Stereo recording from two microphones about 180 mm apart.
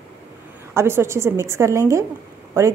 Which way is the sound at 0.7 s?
15° right (ahead or behind).